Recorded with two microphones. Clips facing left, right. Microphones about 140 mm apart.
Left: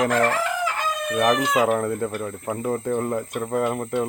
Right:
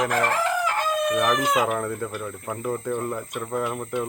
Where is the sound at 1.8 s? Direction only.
25° left (ahead or behind).